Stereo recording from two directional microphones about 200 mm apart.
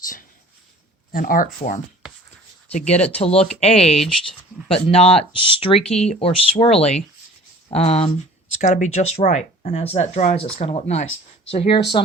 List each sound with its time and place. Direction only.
1.1 s speech: 45° left (ahead or behind)
3.9 s speech: centre (ahead or behind)
4.7 s speech: 30° left (ahead or behind)